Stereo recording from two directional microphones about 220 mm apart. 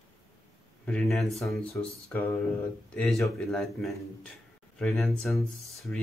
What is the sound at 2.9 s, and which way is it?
A man's voice, centre (ahead or behind).